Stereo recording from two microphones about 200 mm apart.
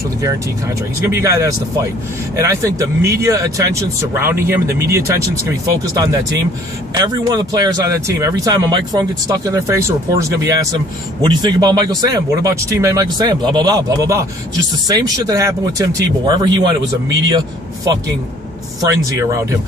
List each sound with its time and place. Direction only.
1.0 s speech: 15° right (ahead or behind)
7.0 s speech: 20° right (ahead or behind)